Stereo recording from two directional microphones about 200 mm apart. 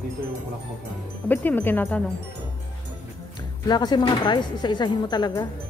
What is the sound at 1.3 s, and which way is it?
Speech, 10° left (ahead or behind).